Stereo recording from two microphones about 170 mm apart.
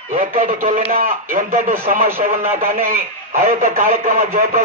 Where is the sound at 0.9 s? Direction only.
60° right (ahead or behind).